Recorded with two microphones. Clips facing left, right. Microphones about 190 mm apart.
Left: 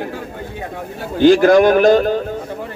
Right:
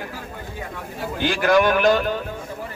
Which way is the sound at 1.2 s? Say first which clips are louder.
Left 9 dB; 45° left (ahead or behind).